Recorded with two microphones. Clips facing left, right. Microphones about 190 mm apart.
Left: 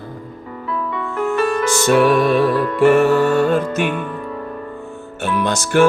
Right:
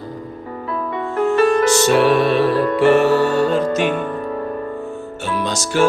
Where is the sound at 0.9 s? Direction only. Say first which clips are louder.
Right 4 dB; 35° right (ahead or behind).